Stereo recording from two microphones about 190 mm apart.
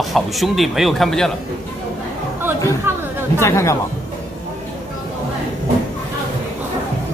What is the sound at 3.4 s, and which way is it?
Speech, 15° left (ahead or behind).